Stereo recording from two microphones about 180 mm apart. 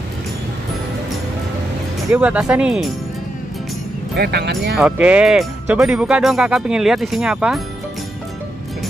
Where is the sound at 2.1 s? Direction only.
5° right (ahead or behind).